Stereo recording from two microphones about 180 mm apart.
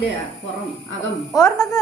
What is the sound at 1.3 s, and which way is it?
Speech, 20° left (ahead or behind).